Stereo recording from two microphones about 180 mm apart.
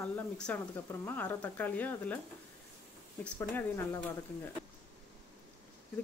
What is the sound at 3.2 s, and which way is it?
Speech, 10° left (ahead or behind).